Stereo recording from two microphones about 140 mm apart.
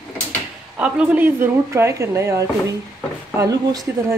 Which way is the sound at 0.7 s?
10° right (ahead or behind).